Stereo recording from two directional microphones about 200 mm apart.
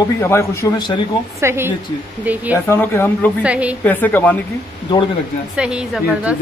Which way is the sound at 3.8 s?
10° left (ahead or behind).